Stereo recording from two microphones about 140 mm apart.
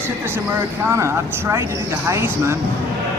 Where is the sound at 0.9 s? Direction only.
20° right (ahead or behind).